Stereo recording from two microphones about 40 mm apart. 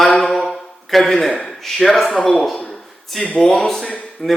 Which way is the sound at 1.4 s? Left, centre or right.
Centre.